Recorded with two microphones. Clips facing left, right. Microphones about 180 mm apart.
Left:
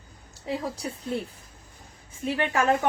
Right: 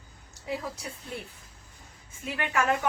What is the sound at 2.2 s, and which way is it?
Speech, 30° left (ahead or behind).